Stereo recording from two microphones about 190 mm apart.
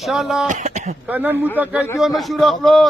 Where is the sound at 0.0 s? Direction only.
Centre (ahead or behind).